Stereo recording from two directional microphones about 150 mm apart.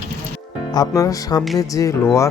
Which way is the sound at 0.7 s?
25° left (ahead or behind).